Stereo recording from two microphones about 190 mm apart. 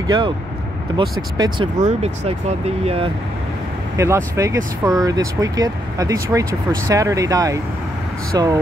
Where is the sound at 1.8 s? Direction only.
35° right (ahead or behind).